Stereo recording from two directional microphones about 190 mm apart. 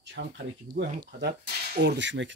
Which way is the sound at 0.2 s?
60° right (ahead or behind).